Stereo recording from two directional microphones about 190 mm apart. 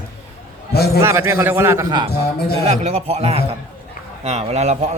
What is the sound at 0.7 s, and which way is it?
Speech, 55° left (ahead or behind).